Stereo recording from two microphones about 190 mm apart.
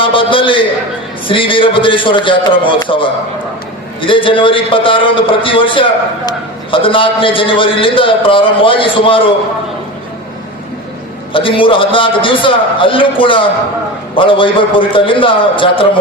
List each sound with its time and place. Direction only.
0.0 s a man's voice: 25° left (ahead or behind)
11.3 s a man's voice: 25° left (ahead or behind)